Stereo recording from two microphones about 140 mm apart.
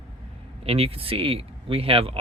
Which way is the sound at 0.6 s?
45° right (ahead or behind).